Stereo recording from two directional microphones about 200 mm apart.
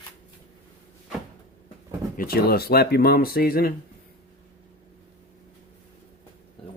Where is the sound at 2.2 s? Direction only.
50° left (ahead or behind).